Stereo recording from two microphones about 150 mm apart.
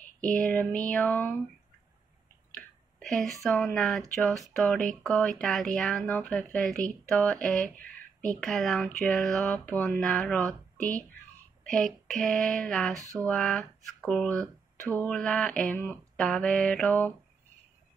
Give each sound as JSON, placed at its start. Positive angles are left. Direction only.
{"t": 0.4, "sound": "speech", "side_deg": 10}
{"t": 2.5, "sound": "a sound", "side_deg": 5}
{"t": 3.4, "sound": "speech", "side_deg": 5}
{"t": 12.9, "sound": "speech", "side_deg": -20}
{"t": 13.2, "sound": "speech", "side_deg": 5}